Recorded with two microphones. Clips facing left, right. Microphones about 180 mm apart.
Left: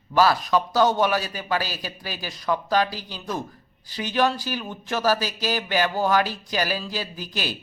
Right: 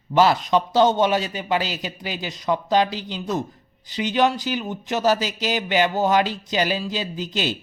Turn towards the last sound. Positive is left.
turn(degrees=-25)  # may be behind; listen again after turning